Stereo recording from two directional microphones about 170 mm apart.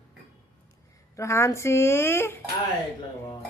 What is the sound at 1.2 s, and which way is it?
Speech, 15° left (ahead or behind).